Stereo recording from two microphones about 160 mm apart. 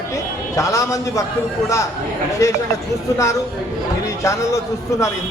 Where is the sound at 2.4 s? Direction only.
20° left (ahead or behind).